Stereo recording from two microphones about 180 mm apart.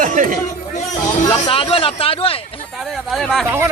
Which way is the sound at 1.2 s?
20° left (ahead or behind).